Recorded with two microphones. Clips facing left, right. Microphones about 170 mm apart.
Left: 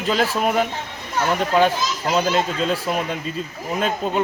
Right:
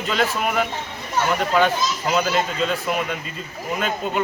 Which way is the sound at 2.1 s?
35° left (ahead or behind).